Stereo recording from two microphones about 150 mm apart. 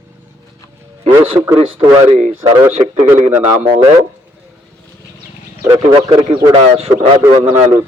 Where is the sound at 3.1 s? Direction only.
15° right (ahead or behind).